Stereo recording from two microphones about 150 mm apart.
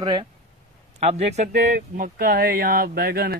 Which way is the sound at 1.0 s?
45° right (ahead or behind).